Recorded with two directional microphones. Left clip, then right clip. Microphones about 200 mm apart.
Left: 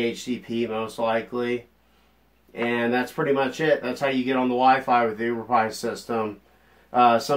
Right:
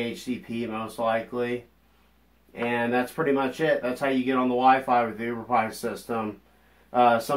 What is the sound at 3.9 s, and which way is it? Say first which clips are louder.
Speech: left 1 dB; 25° left (ahead or behind).